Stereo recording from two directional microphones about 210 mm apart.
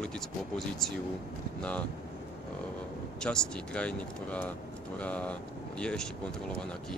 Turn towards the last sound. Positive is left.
turn(degrees=5)  # may be behind; listen again after turning